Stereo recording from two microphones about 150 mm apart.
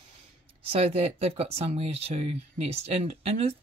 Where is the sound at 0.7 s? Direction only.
40° right (ahead or behind).